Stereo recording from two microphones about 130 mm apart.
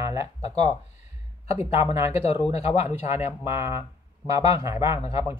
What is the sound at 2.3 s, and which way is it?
Speech, 55° left (ahead or behind).